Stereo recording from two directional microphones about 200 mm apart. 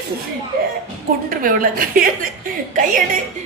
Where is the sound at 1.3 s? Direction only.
45° right (ahead or behind).